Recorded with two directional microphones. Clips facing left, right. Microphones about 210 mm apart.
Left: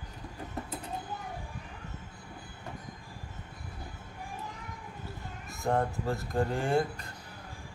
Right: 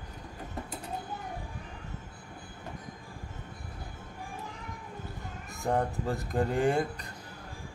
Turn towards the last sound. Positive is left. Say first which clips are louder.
# right 2 dB
turn(degrees=-20)  # may be behind; listen again after turning